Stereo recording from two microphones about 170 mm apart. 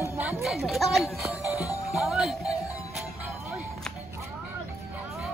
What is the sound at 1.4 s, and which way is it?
Music, 20° left (ahead or behind).